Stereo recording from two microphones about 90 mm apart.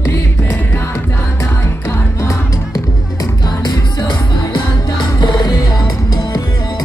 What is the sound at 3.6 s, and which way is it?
Music, 55° left (ahead or behind).